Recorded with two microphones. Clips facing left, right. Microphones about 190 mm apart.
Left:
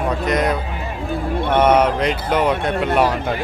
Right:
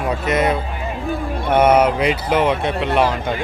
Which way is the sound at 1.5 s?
10° right (ahead or behind).